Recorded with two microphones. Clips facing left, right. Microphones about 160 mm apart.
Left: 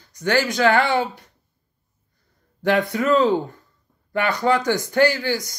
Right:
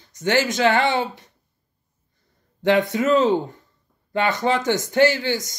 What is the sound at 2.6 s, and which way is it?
Speech, 20° right (ahead or behind).